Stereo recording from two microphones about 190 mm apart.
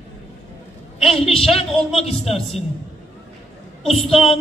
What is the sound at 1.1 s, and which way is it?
Speech, 30° left (ahead or behind).